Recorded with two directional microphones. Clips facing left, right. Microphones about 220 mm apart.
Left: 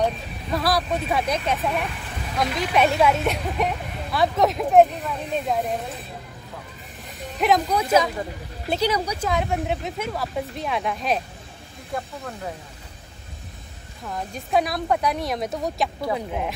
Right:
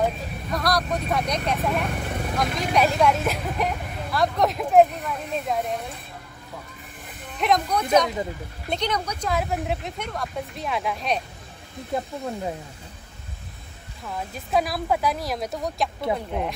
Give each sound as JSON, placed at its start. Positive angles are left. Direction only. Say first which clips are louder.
{"t": 0.0, "sound": "speech", "louder": "left 1 dB", "side_deg": 5}
{"t": 1.9, "sound": "vehicle", "louder": "right 6 dB", "side_deg": -55}
{"t": 2.3, "sound": "speech", "louder": "left 2 dB", "side_deg": 0}
{"t": 7.3, "sound": "speech", "louder": "left 2 dB", "side_deg": 0}
{"t": 9.3, "sound": "speech", "louder": "even", "side_deg": 0}
{"t": 14.0, "sound": "speech", "louder": "left 1 dB", "side_deg": 0}